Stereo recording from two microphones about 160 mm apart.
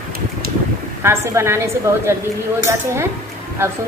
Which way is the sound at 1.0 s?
15° right (ahead or behind).